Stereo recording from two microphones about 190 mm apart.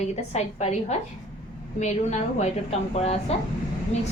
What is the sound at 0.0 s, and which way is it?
A woman's voice, 35° left (ahead or behind).